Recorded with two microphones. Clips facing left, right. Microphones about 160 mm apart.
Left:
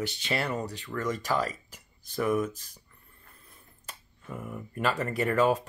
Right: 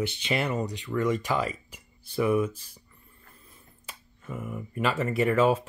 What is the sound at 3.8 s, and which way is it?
Speech, 5° right (ahead or behind).